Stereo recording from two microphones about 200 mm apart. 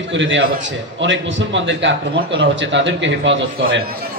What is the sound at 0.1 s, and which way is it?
A man's voice, 65° right (ahead or behind).